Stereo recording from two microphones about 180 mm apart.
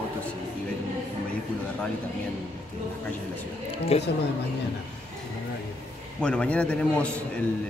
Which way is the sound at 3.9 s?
35° left (ahead or behind).